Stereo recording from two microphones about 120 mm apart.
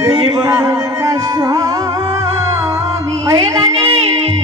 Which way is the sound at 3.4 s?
35° right (ahead or behind).